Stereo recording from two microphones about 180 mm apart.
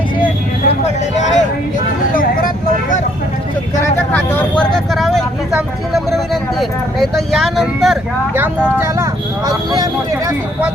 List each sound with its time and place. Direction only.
1.1 s a sound: 40° left (ahead or behind)
3.8 s vehicle: 10° left (ahead or behind)
9.5 s speech: 20° right (ahead or behind)